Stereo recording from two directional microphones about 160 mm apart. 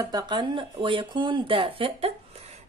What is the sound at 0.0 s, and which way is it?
Speech, 30° right (ahead or behind).